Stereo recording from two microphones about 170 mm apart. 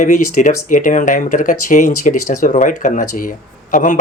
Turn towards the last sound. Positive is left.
turn(degrees=50)  # may be behind; listen again after turning